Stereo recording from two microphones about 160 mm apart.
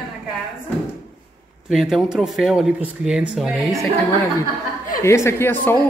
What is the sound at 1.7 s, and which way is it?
Speech, centre (ahead or behind).